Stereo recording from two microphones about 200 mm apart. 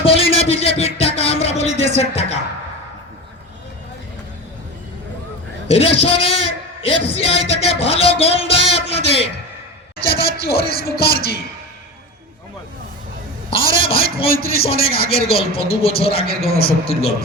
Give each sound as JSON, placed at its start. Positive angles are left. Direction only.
{"t": 0.0, "sound": "music", "side_deg": 30}
{"t": 2.0, "sound": "a woman's voice", "side_deg": 30}
{"t": 5.6, "sound": "speech", "side_deg": 30}
{"t": 10.1, "sound": "music", "side_deg": 50}
{"t": 13.7, "sound": "speech", "side_deg": 25}
{"t": 16.2, "sound": "music", "side_deg": 50}